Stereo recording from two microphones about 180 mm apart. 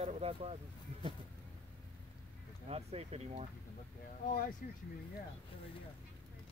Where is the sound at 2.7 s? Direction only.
35° right (ahead or behind).